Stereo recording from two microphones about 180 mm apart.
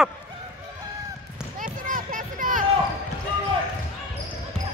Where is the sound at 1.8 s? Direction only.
50° right (ahead or behind).